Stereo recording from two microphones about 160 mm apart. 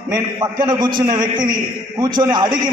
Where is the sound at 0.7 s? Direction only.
30° right (ahead or behind).